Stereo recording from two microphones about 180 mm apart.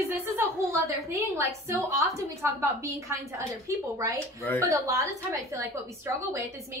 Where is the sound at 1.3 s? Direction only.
15° right (ahead or behind).